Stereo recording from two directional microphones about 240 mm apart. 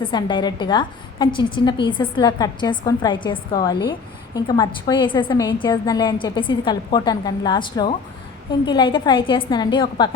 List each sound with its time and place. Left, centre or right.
0.0 s a woman's voice: centre